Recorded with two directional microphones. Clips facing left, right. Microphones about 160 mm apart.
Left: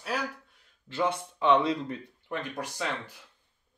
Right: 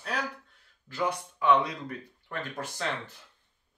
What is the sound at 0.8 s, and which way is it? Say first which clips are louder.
Speech: left 2 dB; 25° left (ahead or behind).